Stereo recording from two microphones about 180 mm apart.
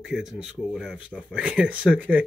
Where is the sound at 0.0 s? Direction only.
Centre (ahead or behind).